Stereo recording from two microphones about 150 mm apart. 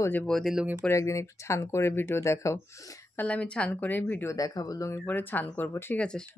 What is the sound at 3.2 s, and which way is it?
Speech, 10° left (ahead or behind).